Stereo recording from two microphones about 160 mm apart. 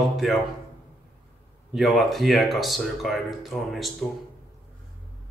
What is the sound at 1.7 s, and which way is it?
Speech, centre (ahead or behind).